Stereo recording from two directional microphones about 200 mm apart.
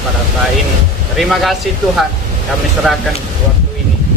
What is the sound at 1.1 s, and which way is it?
Speech, centre (ahead or behind).